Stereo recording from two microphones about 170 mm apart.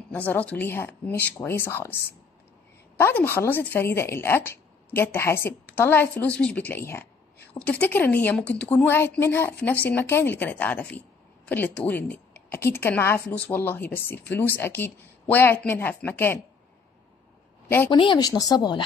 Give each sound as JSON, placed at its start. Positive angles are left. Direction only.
{"t": 0.1, "sound": "a woman's voice", "side_deg": 10}
{"t": 3.0, "sound": "a woman's voice", "side_deg": 10}
{"t": 17.9, "sound": "speech", "side_deg": 25}